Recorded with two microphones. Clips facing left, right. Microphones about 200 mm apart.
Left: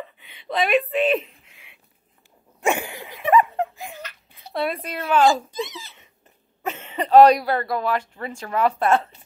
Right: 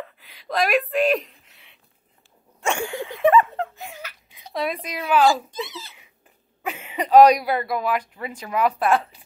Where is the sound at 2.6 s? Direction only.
20° left (ahead or behind).